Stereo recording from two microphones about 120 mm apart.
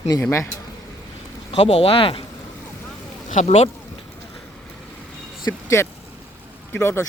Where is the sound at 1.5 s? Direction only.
60° left (ahead or behind).